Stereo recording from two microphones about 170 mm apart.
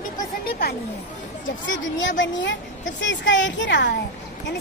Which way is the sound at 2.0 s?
90° left.